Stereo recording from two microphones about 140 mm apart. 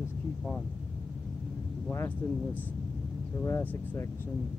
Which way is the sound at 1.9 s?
15° left (ahead or behind).